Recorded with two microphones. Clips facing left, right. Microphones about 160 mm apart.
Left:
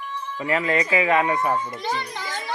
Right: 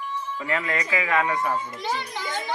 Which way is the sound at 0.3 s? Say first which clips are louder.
Left 6 dB; 20° left (ahead or behind).